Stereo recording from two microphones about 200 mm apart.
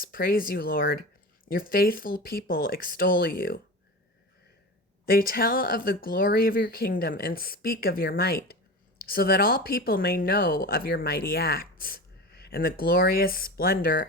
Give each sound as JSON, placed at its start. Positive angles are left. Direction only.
{"t": 0.0, "sound": "speech", "side_deg": 45}
{"t": 5.0, "sound": "speech", "side_deg": 45}